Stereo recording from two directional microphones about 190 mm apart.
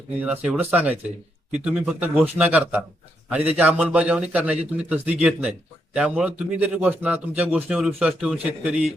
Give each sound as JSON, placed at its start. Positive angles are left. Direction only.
{"t": 0.2, "sound": "a man's voice", "side_deg": -5}